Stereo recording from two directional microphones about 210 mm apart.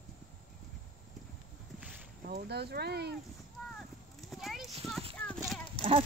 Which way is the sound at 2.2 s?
50° right (ahead or behind).